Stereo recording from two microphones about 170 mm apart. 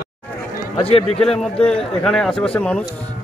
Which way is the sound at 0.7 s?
35° left (ahead or behind).